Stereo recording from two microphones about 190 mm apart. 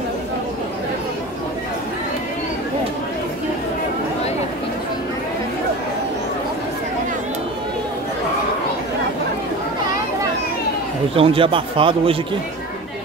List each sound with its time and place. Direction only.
11.1 s a man's voice: 30° right (ahead or behind)